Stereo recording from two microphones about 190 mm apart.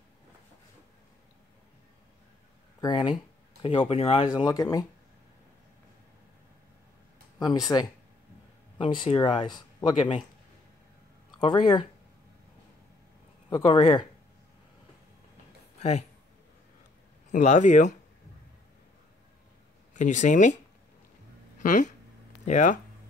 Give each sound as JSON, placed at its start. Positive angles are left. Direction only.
{"t": 2.8, "sound": "speech", "side_deg": 25}
{"t": 4.5, "sound": "speech", "side_deg": 20}
{"t": 7.3, "sound": "speech", "side_deg": 20}
{"t": 11.3, "sound": "speech", "side_deg": 25}
{"t": 13.5, "sound": "speech", "side_deg": 25}
{"t": 15.8, "sound": "speech", "side_deg": 35}
{"t": 17.3, "sound": "speech", "side_deg": 40}
{"t": 19.9, "sound": "speech", "side_deg": 40}
{"t": 21.5, "sound": "speech", "side_deg": 40}